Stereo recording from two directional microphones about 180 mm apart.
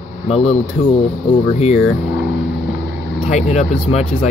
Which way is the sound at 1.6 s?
35° left (ahead or behind).